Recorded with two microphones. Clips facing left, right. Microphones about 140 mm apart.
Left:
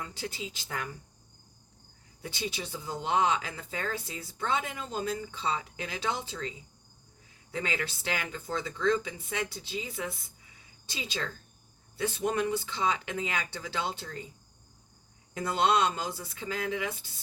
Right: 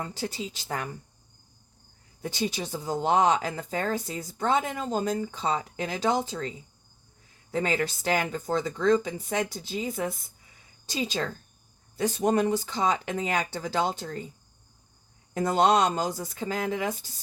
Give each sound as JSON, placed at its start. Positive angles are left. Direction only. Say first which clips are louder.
{"t": 0.0, "sound": "speech", "louder": "right 5 dB", "side_deg": -40}
{"t": 2.2, "sound": "speech", "louder": "right 6 dB", "side_deg": -45}
{"t": 7.5, "sound": "speech", "louder": "right 7 dB", "side_deg": -45}
{"t": 15.4, "sound": "speech", "louder": "right 5 dB", "side_deg": -40}